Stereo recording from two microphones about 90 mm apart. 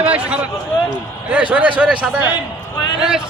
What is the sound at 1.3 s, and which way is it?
A man's voice, 15° right (ahead or behind).